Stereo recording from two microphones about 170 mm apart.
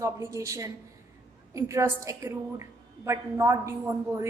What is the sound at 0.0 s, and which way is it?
A woman's voice, 15° right (ahead or behind).